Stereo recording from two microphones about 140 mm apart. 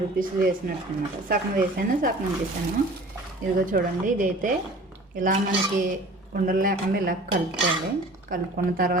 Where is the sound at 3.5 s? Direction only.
70° right (ahead or behind).